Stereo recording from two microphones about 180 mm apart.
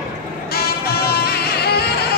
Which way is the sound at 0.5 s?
60° left (ahead or behind).